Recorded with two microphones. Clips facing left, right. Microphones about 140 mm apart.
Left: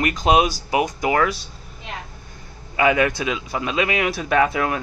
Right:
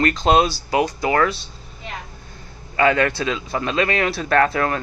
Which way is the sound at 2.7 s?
15° left (ahead or behind).